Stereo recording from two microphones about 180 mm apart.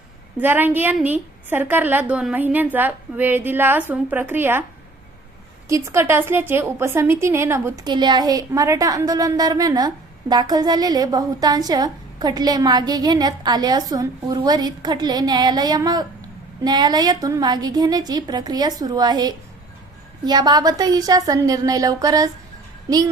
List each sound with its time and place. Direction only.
0.3 s a woman's voice: 10° right (ahead or behind)
5.6 s a woman's voice: 15° right (ahead or behind)